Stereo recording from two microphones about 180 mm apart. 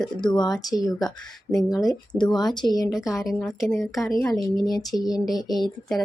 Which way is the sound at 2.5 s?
25° left (ahead or behind).